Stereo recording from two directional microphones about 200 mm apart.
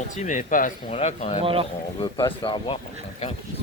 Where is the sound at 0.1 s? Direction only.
40° left (ahead or behind).